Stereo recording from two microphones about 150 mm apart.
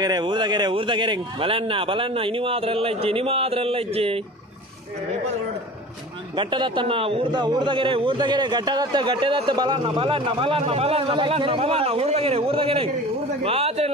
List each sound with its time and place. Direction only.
0.0 s a man's voice: 30° right (ahead or behind)
6.3 s a man's voice: 30° right (ahead or behind)